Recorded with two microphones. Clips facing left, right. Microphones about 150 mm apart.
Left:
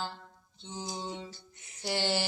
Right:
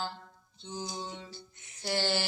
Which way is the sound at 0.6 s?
20° left (ahead or behind).